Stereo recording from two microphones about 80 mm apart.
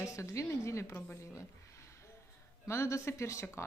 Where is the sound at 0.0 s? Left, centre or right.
Left.